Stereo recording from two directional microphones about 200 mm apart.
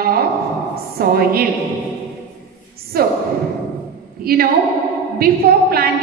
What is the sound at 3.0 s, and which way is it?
Speech, 50° right (ahead or behind).